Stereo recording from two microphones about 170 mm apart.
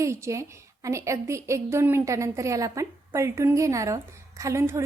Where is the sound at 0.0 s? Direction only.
15° right (ahead or behind).